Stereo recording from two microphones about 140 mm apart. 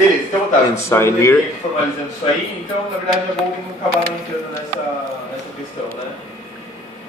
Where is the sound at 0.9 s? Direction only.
20° left (ahead or behind).